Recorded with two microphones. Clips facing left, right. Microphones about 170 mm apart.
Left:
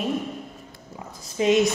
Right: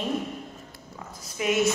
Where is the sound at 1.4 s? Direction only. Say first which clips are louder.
Left 6 dB; 30° left (ahead or behind).